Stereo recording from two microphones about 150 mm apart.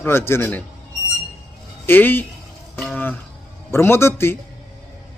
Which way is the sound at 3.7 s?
15° left (ahead or behind).